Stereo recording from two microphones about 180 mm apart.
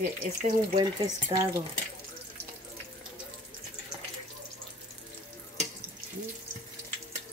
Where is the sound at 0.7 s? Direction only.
20° right (ahead or behind).